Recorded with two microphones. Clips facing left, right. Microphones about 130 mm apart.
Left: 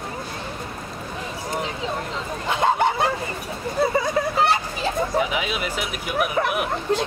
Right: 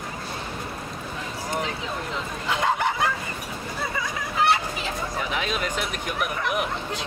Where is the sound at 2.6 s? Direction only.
30° left (ahead or behind).